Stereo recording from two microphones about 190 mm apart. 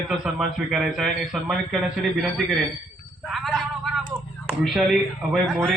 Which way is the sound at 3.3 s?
Centre (ahead or behind).